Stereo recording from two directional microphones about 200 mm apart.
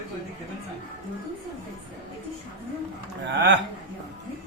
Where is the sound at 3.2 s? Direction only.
60° right (ahead or behind).